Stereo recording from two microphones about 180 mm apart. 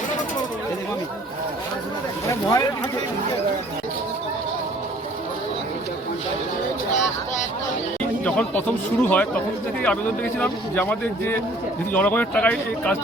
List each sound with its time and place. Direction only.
2.2 s speech: 20° left (ahead or behind)
8.2 s a man's voice: 10° left (ahead or behind)